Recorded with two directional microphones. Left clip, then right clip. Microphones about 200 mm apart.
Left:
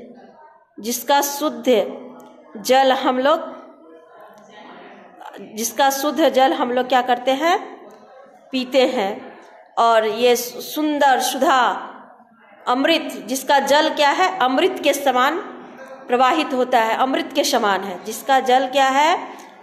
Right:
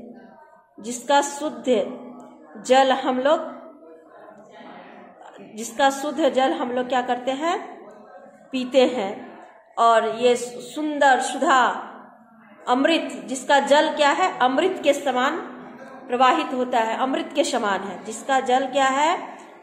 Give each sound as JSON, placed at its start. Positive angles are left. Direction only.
{"t": 0.7, "sound": "a woman's voice", "side_deg": 25}
{"t": 5.2, "sound": "a woman's voice", "side_deg": 25}